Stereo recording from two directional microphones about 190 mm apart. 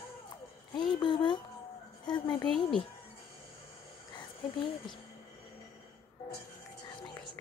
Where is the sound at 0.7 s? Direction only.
25° left (ahead or behind).